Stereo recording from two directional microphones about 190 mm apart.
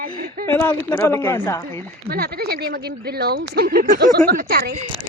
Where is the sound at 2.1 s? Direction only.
55° right (ahead or behind).